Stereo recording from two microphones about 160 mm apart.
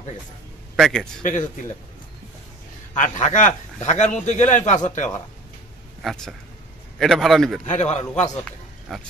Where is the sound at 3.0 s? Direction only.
50° left (ahead or behind).